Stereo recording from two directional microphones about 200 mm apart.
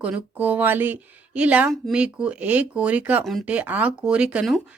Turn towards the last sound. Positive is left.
turn(degrees=-5)  # may be behind; listen again after turning